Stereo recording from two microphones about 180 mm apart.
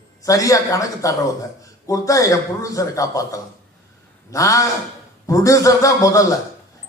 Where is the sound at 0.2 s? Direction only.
20° left (ahead or behind).